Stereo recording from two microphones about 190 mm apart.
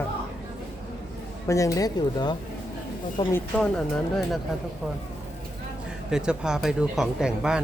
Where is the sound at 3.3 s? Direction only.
5° left (ahead or behind).